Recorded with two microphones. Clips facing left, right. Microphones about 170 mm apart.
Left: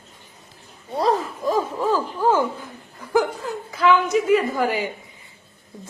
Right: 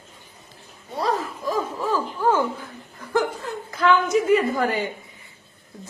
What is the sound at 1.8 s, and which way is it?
Speech, 15° left (ahead or behind).